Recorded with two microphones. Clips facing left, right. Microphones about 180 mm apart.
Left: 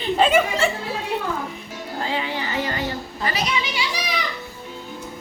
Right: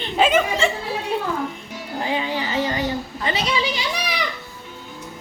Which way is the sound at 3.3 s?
25° right (ahead or behind).